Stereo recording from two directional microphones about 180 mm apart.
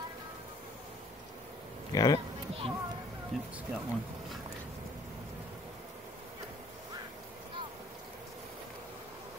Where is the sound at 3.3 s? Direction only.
Centre (ahead or behind).